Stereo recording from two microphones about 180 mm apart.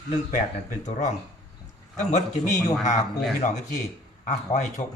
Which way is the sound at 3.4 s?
40° left (ahead or behind).